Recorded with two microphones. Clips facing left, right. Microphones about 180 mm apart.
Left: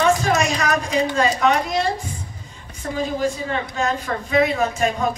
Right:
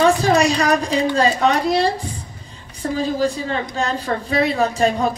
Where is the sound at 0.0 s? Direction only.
35° right (ahead or behind).